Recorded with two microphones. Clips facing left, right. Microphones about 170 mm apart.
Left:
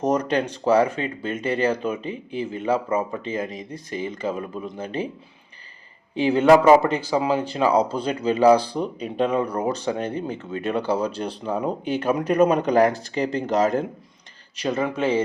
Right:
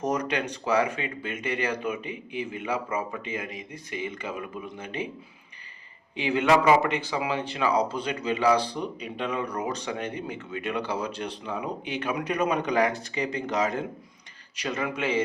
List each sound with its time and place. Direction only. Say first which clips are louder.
0.3 s speech: left 7 dB; 35° left (ahead or behind)
6.1 s speech: left 7 dB; 35° left (ahead or behind)